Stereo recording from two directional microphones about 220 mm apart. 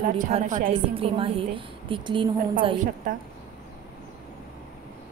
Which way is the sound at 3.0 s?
35° right (ahead or behind).